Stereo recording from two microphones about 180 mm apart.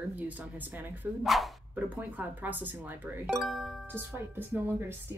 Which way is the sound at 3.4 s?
Centre (ahead or behind).